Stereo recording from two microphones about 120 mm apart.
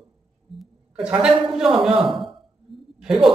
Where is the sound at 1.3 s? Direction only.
5° right (ahead or behind).